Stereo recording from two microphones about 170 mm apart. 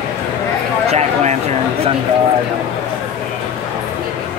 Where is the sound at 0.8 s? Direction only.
40° right (ahead or behind).